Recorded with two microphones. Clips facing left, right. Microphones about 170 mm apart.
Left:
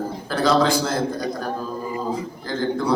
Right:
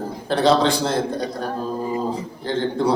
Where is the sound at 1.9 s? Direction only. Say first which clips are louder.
Right 2 dB; 30° right (ahead or behind).